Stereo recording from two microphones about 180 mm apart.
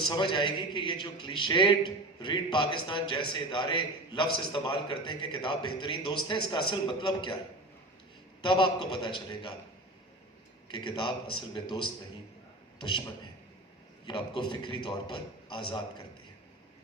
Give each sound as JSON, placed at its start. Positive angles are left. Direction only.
{"t": 0.0, "sound": "a man's voice", "side_deg": 25}
{"t": 8.4, "sound": "a man's voice", "side_deg": 25}
{"t": 10.7, "sound": "a man's voice", "side_deg": 25}
{"t": 14.0, "sound": "a man's voice", "side_deg": 25}